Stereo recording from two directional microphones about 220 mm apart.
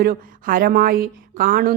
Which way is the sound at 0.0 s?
40° right (ahead or behind).